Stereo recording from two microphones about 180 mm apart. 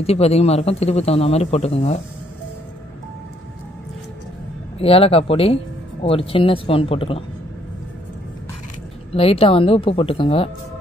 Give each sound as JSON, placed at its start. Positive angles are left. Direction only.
{"t": 0.0, "sound": "speech", "side_deg": 35}
{"t": 4.7, "sound": "speech", "side_deg": 30}
{"t": 9.1, "sound": "speech", "side_deg": 30}